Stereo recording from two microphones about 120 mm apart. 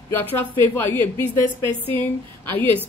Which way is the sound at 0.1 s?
15° left (ahead or behind).